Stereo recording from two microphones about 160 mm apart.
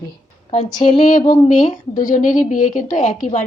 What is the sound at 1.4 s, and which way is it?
A woman's voice, 55° left (ahead or behind).